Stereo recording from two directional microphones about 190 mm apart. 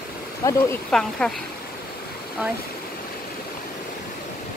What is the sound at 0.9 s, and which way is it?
Speech, 5° left (ahead or behind).